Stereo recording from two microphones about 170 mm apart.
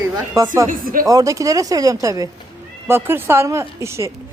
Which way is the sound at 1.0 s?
20° right (ahead or behind).